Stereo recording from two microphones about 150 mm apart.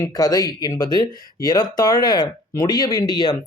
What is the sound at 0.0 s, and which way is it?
Speech, 25° left (ahead or behind).